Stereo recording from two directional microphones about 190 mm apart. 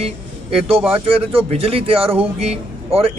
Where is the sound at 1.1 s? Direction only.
30° right (ahead or behind).